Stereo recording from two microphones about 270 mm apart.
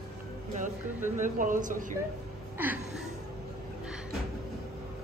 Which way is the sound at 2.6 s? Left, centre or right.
Centre.